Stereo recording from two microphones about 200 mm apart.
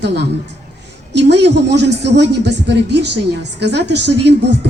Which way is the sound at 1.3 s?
60° right (ahead or behind).